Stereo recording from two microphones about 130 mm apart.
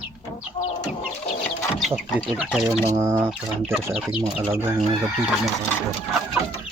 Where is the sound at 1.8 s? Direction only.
5° right (ahead or behind).